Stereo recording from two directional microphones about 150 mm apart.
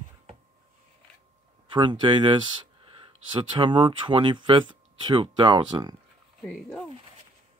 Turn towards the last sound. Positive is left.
turn(degrees=5)  # may be behind; listen again after turning